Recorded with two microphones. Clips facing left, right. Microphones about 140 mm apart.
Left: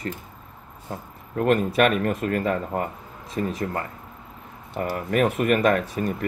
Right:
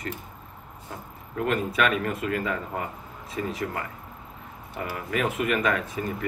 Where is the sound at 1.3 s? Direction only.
45° left (ahead or behind).